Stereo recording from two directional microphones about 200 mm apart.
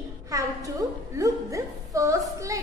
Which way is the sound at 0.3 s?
15° right (ahead or behind).